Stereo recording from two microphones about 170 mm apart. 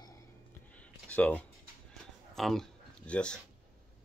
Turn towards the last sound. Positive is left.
turn(degrees=5)  # may be behind; listen again after turning